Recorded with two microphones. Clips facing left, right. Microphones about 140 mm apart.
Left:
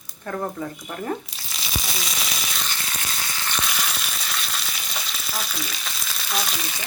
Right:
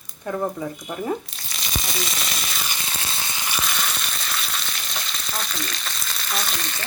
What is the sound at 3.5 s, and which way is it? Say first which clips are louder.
Frying: right 1 dB; centre (ahead or behind).